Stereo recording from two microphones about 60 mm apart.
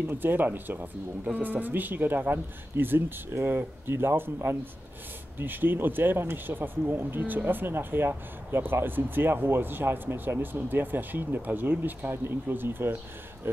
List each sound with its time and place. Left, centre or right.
0.1 s speech: right
5.4 s speech: right